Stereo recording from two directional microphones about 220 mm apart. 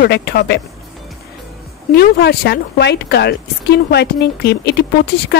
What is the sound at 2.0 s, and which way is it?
Speech, 50° left (ahead or behind).